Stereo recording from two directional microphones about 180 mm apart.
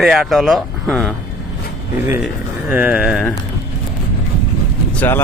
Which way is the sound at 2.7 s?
10° right (ahead or behind).